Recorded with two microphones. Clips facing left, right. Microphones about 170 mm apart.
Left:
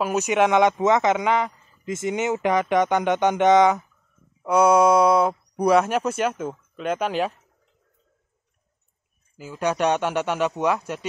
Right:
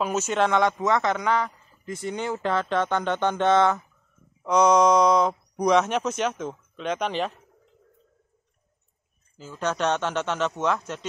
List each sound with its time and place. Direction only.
0.0 s a man's voice: 15° left (ahead or behind)
9.4 s a man's voice: 10° left (ahead or behind)